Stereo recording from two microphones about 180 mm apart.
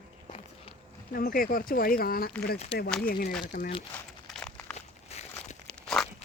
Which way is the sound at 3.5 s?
45° left (ahead or behind).